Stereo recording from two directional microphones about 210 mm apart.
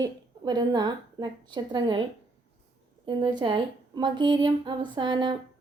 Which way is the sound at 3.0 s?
20° right (ahead or behind).